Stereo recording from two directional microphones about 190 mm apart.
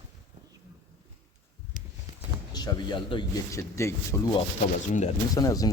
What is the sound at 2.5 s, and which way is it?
Speech, 20° left (ahead or behind).